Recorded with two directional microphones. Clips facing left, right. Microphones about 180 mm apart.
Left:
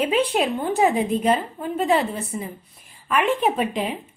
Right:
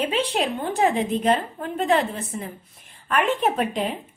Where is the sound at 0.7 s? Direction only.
10° left (ahead or behind).